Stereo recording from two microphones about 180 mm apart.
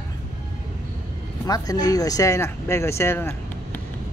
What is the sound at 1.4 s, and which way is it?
Speech, 20° left (ahead or behind).